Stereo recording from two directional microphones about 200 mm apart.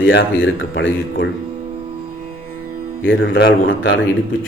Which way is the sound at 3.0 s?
65° left (ahead or behind).